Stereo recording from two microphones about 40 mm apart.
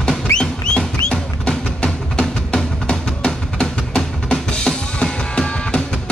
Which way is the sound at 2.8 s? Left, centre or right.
Left.